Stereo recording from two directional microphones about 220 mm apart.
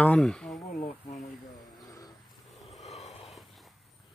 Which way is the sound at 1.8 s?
15° left (ahead or behind).